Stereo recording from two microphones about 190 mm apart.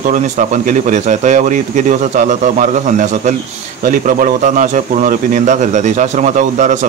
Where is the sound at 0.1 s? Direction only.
40° right (ahead or behind).